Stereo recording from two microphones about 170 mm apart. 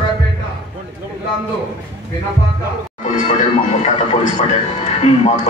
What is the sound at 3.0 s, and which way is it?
Speech, 45° left (ahead or behind).